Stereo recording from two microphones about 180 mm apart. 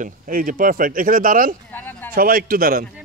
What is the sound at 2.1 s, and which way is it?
Speech, 55° right (ahead or behind).